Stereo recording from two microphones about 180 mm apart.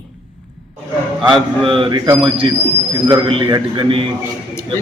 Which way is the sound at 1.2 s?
30° right (ahead or behind).